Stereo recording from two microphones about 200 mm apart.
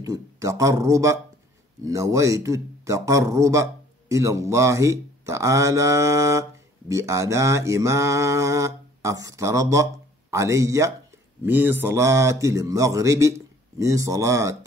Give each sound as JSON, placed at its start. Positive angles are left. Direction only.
{"t": 0.0, "sound": "mantra", "side_deg": -15}